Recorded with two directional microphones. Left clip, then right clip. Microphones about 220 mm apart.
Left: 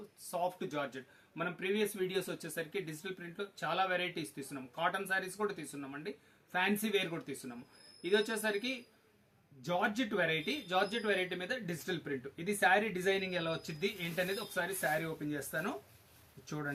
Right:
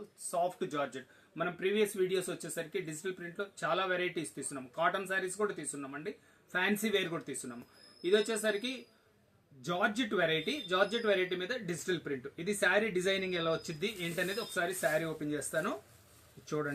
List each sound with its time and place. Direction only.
0.3 s speech: 15° left (ahead or behind)